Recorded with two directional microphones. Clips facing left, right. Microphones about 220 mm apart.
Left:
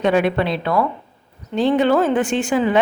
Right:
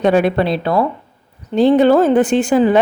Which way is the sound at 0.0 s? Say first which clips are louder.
Right 4 dB; 40° right (ahead or behind).